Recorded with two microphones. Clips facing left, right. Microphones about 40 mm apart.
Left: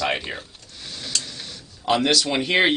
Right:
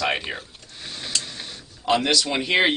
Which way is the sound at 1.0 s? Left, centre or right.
Centre.